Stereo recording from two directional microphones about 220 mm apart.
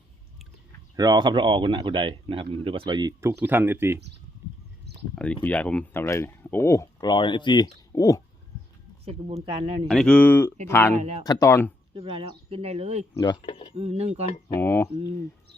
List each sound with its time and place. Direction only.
0.9 s speech: 20° right (ahead or behind)
5.1 s speech: 5° left (ahead or behind)
9.0 s speech: 25° right (ahead or behind)
9.9 s speech: 5° left (ahead or behind)
10.9 s speech: 30° right (ahead or behind)
11.3 s speech: 15° left (ahead or behind)
11.9 s speech: 25° right (ahead or behind)
13.1 s speech: 20° left (ahead or behind)
13.7 s speech: 30° right (ahead or behind)
14.5 s speech: 10° left (ahead or behind)